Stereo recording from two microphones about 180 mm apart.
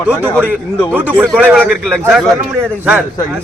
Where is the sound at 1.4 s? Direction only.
10° right (ahead or behind).